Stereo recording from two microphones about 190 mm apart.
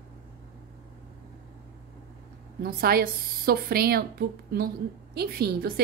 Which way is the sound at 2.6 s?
50° right (ahead or behind).